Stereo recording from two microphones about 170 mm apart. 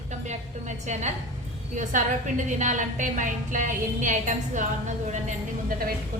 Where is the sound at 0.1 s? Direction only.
45° right (ahead or behind).